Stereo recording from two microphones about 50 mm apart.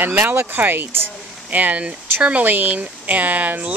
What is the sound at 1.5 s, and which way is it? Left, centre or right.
Speech, right.